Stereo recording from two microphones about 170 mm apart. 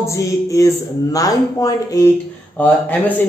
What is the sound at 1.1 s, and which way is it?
Speech, 20° left (ahead or behind).